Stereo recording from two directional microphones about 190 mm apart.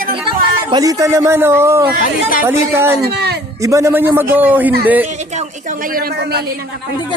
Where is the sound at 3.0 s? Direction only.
60° right (ahead or behind).